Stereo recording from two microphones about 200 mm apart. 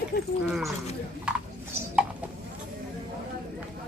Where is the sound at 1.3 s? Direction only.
5° right (ahead or behind).